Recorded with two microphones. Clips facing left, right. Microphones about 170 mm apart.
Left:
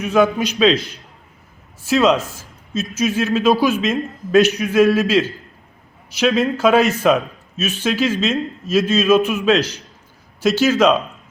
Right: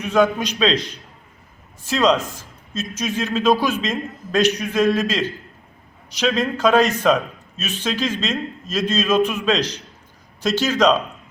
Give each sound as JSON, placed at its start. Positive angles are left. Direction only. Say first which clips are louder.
{"t": 0.0, "sound": "a man's voice", "louder": "left 2 dB", "side_deg": 5}